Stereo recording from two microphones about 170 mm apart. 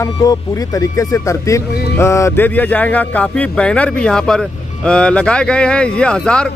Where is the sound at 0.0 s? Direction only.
20° left (ahead or behind).